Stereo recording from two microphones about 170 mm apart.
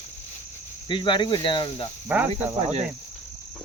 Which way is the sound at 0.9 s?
30° left (ahead or behind).